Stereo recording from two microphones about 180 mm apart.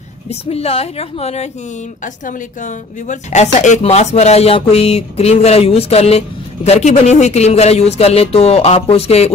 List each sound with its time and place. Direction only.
0.3 s speech: 35° left (ahead or behind)